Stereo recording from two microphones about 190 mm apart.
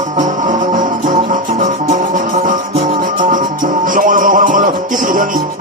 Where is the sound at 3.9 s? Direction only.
45° right (ahead or behind).